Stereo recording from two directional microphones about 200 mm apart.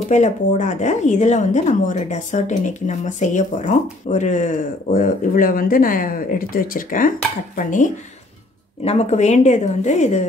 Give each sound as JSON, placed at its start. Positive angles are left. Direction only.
{"t": 0.1, "sound": "speech", "side_deg": 35}